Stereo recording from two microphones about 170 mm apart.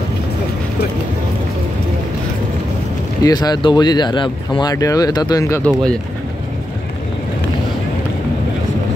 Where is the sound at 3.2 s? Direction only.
25° left (ahead or behind).